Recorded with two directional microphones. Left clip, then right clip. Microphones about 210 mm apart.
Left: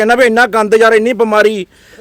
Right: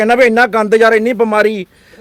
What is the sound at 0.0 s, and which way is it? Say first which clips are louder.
A man's voice: left 1 dB; 5° left (ahead or behind).